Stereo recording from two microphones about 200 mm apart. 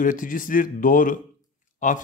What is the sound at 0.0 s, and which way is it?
A man's voice, 40° left (ahead or behind).